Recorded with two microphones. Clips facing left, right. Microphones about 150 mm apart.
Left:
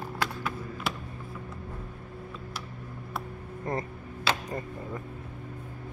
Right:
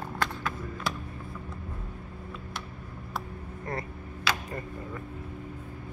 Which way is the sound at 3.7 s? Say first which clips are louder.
Left 3 dB; 20° left (ahead or behind).